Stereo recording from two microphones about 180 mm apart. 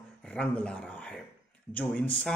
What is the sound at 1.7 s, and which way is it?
Speech, 5° left (ahead or behind).